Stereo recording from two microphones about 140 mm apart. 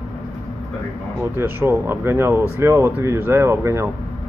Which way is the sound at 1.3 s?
15° right (ahead or behind).